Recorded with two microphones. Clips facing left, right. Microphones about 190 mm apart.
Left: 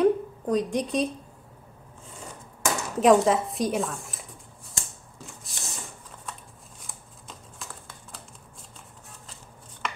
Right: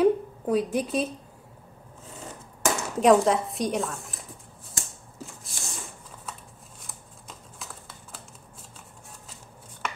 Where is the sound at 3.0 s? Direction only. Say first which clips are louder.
Even; centre (ahead or behind).